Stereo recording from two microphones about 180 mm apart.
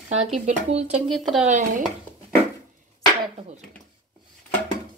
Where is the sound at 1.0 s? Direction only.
Centre (ahead or behind).